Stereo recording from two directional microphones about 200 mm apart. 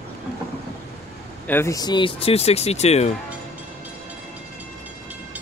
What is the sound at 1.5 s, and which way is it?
Speech, 15° left (ahead or behind).